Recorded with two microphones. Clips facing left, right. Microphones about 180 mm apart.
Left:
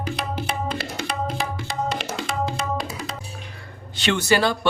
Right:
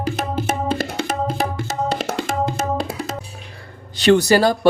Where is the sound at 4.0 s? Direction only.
35° right (ahead or behind).